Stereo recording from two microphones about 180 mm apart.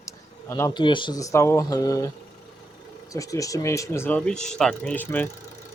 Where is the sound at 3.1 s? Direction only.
20° left (ahead or behind).